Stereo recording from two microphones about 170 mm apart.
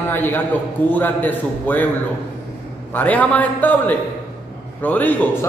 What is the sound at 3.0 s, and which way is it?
A man's voice, 10° left (ahead or behind).